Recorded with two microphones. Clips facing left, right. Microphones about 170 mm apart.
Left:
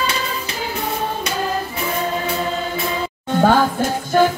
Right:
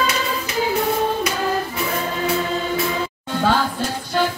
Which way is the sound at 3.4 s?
50° left (ahead or behind).